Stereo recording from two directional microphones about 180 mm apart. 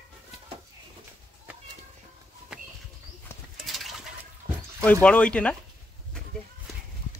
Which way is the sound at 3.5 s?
Centre (ahead or behind).